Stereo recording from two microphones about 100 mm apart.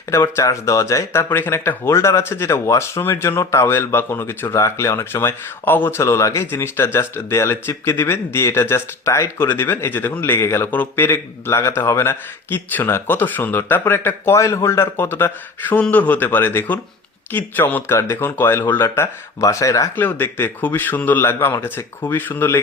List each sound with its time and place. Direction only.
0.1 s speech: 30° left (ahead or behind)
20.0 s speech: 20° left (ahead or behind)